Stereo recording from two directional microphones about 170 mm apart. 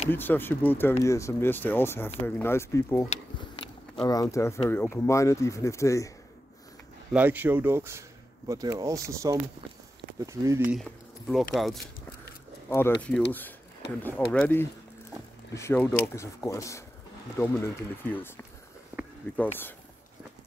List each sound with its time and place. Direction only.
0.1 s speech: 10° left (ahead or behind)
3.3 s speech: 30° left (ahead or behind)
7.1 s speech: 10° right (ahead or behind)
10.7 s speech: centre (ahead or behind)
12.6 s speech: 15° left (ahead or behind)
14.0 s speech: 10° left (ahead or behind)
18.9 s a sound: 10° right (ahead or behind)
19.3 s speech: 10° left (ahead or behind)